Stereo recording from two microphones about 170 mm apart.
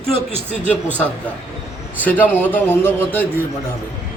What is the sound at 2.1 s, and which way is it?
Speech, 10° left (ahead or behind).